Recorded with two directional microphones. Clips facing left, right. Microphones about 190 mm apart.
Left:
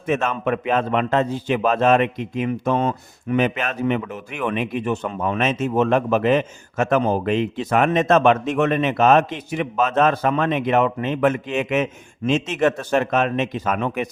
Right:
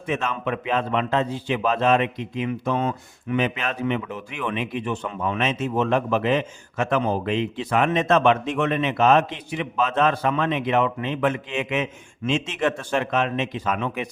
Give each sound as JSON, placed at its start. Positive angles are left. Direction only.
{"t": 0.1, "sound": "a man's voice", "side_deg": 50}